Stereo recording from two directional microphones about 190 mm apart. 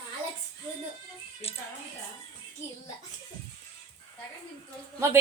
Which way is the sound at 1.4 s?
30° left (ahead or behind).